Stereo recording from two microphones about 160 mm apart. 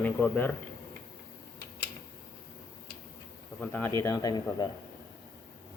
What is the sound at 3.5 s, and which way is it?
Speech, 10° left (ahead or behind).